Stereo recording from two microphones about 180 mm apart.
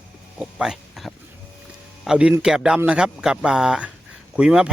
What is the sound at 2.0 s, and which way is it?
A man's voice, 5° right (ahead or behind).